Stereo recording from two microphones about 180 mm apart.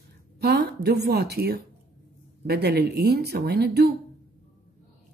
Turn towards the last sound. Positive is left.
turn(degrees=-60)  # may be behind; listen again after turning